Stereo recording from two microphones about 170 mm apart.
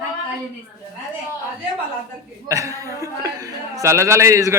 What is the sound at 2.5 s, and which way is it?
Speech, 20° right (ahead or behind).